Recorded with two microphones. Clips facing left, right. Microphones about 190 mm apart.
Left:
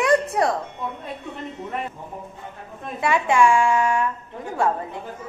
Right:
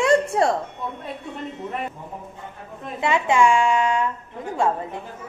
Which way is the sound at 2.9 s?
20° right (ahead or behind).